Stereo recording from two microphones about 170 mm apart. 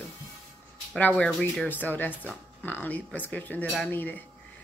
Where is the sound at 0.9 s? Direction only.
5° left (ahead or behind).